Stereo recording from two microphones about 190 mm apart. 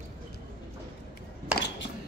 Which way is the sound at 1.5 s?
5° right (ahead or behind).